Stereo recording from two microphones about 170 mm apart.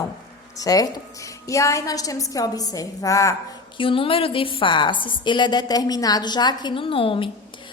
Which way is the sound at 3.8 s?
30° left (ahead or behind).